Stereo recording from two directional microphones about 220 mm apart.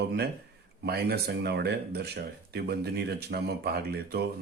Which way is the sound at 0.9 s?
45° right (ahead or behind).